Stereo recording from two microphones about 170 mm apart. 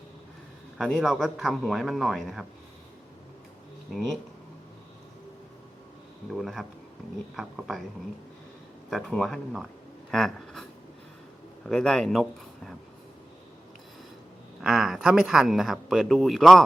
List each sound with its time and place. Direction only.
0.8 s speech: centre (ahead or behind)
6.3 s speech: centre (ahead or behind)
8.9 s speech: centre (ahead or behind)
10.1 s a sound: centre (ahead or behind)
11.6 s speech: 5° left (ahead or behind)
14.6 s speech: 5° right (ahead or behind)